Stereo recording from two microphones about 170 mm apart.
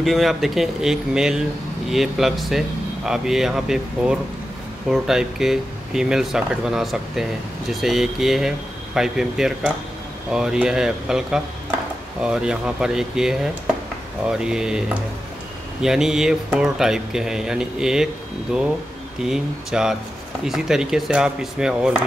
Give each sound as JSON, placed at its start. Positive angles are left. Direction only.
{"t": 0.0, "sound": "speech", "side_deg": 0}